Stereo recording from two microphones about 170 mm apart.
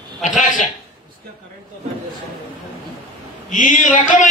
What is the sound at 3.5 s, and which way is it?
Speech, 50° left (ahead or behind).